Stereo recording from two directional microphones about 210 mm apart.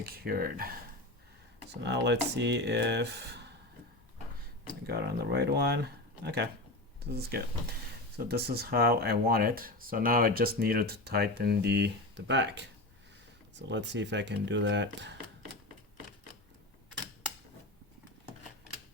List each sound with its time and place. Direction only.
0.0 s speech: 45° right (ahead or behind)
1.7 s speech: 55° right (ahead or behind)
4.9 s speech: 50° right (ahead or behind)